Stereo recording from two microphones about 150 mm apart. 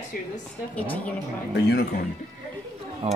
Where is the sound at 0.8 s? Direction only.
10° left (ahead or behind).